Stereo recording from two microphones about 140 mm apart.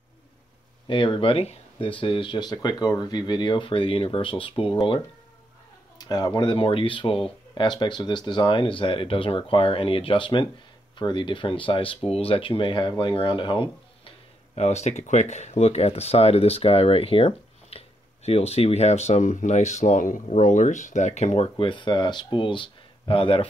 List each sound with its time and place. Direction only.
0.8 s speech: 35° left (ahead or behind)